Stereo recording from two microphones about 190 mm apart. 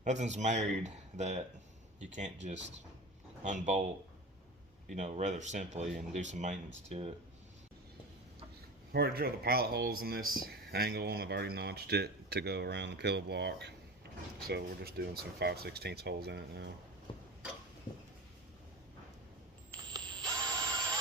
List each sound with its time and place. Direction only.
0.0 s speech: 40° right (ahead or behind)
4.9 s speech: 35° right (ahead or behind)
8.9 s speech: 55° right (ahead or behind)
19.7 s a sound: 20° right (ahead or behind)